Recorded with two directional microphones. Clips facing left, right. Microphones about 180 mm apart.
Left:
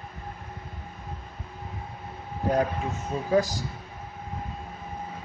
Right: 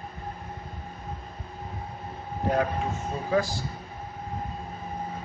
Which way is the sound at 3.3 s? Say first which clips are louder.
Left 2 dB; 40° left (ahead or behind).